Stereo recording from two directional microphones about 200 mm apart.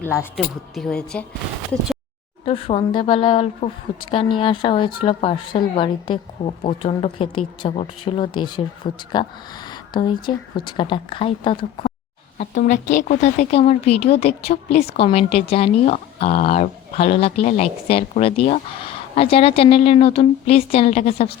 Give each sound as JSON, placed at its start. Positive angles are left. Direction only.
{"t": 0.0, "sound": "speech", "side_deg": 10}
{"t": 2.4, "sound": "a woman's voice", "side_deg": 30}
{"t": 12.4, "sound": "a woman's voice", "side_deg": 40}